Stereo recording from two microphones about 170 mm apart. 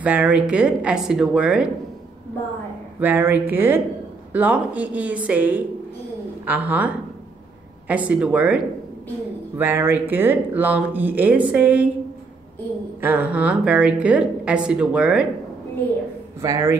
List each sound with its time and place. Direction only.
0.0 s speech: 10° right (ahead or behind)
3.0 s speech: 10° right (ahead or behind)
9.6 s speech: 10° right (ahead or behind)
13.0 s speech: 10° right (ahead or behind)
16.3 s a man's voice: 20° right (ahead or behind)